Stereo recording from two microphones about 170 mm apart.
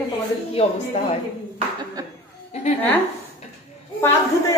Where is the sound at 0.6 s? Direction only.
40° left (ahead or behind).